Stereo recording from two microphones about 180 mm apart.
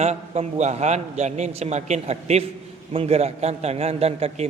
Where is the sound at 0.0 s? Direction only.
35° right (ahead or behind).